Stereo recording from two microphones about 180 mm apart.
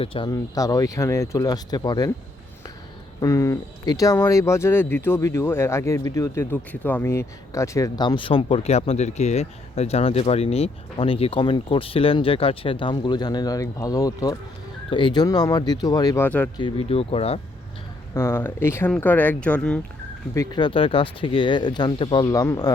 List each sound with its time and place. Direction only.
0.0 s speech: 30° left (ahead or behind)
0.3 s speech: 20° left (ahead or behind)
3.2 s speech: 20° left (ahead or behind)
16.6 s speech: 30° left (ahead or behind)
18.1 s speech: 15° left (ahead or behind)
20.3 s speech: 20° left (ahead or behind)